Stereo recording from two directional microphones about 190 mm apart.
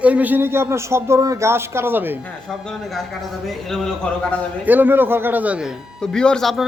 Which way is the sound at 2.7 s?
Centre (ahead or behind).